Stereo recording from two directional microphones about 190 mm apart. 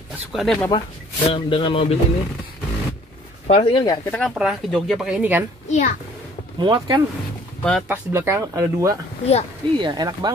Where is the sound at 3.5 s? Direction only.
30° left (ahead or behind).